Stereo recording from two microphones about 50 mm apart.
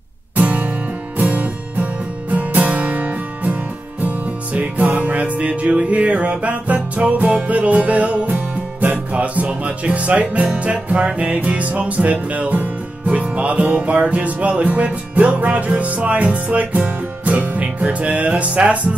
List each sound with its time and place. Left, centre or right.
0.4 s music: right
4.6 s music: right